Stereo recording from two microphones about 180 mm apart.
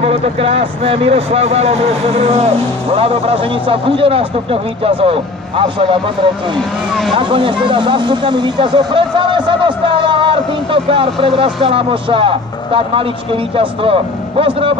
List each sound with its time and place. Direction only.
0.0 s speech: 35° right (ahead or behind)
7.2 s speech: 25° right (ahead or behind)